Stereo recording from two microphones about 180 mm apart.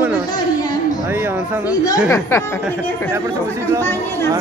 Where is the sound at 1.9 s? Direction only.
15° left (ahead or behind).